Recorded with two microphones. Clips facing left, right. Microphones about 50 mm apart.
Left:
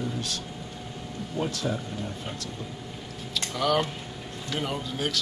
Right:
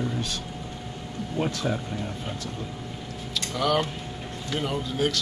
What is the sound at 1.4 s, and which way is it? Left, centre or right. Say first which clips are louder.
Speech: right 2 dB; right.